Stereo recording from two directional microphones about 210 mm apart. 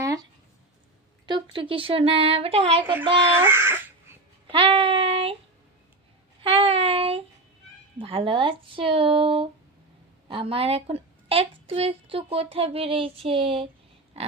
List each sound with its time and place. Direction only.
0.0 s a sound: 15° right (ahead or behind)
1.3 s a woman's voice: 25° right (ahead or behind)
3.3 s speech: 10° right (ahead or behind)
4.5 s a woman's voice: 25° right (ahead or behind)
6.6 s child singing: 25° right (ahead or behind)
7.9 s a woman's voice: 25° right (ahead or behind)
14.2 s pig: 30° right (ahead or behind)